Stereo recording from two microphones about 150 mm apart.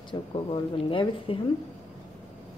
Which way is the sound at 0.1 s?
35° left (ahead or behind).